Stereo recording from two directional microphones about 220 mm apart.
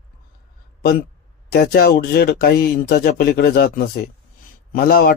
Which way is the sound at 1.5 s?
40° left (ahead or behind).